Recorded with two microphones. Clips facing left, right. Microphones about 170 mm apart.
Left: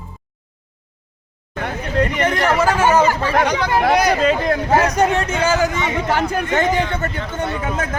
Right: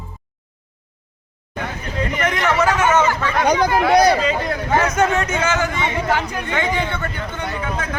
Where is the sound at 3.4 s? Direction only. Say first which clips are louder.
Right 4 dB; 45° right (ahead or behind).